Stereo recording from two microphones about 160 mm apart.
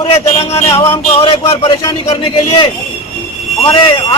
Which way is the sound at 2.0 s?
35° left (ahead or behind).